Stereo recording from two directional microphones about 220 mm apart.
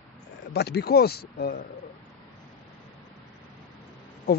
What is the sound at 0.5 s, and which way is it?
Speech, 45° left (ahead or behind).